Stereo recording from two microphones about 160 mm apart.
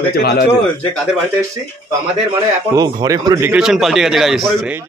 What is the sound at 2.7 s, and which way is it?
Speech, 25° right (ahead or behind).